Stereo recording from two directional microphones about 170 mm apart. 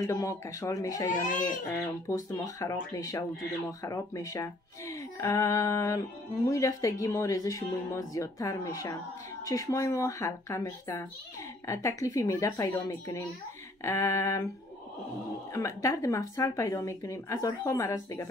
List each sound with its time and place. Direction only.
0.0 s speech: 20° left (ahead or behind)
15.5 s speech: 20° left (ahead or behind)